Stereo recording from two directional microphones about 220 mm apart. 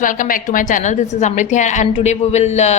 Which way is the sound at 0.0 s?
35° left (ahead or behind).